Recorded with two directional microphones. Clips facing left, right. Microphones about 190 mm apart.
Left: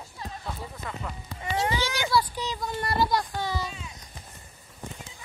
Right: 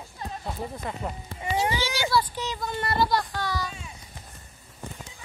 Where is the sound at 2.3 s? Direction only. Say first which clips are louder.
Right 1 dB; 10° left (ahead or behind).